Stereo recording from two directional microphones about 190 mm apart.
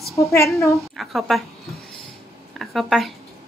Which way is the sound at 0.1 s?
15° left (ahead or behind).